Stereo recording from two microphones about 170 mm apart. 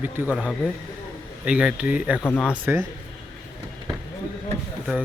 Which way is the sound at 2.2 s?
10° left (ahead or behind).